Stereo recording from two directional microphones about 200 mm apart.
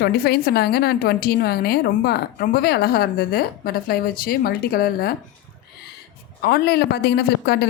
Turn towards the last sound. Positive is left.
turn(degrees=55)  # may be behind; listen again after turning